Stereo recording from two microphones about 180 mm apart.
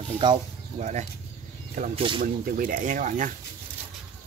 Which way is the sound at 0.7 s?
40° right (ahead or behind).